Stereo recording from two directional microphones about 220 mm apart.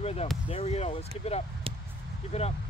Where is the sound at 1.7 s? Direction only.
25° right (ahead or behind).